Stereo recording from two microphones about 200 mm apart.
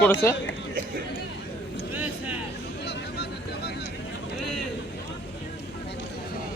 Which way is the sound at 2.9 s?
55° left (ahead or behind).